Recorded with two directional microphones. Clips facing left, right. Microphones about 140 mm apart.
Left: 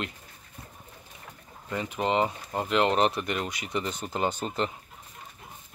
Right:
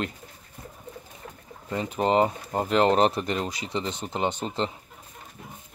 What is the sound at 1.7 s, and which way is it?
Speech, 35° right (ahead or behind).